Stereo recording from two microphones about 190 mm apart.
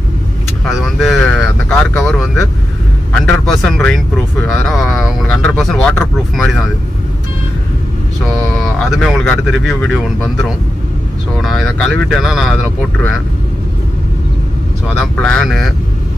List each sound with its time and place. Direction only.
0.7 s vehicle: centre (ahead or behind)
3.1 s speech: 5° left (ahead or behind)
8.7 s speech: centre (ahead or behind)
15.0 s speech: 5° left (ahead or behind)